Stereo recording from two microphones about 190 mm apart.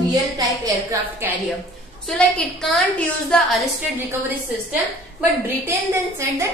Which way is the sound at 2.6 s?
Centre (ahead or behind).